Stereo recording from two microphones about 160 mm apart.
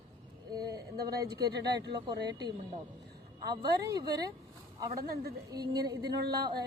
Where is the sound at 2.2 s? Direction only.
90° right.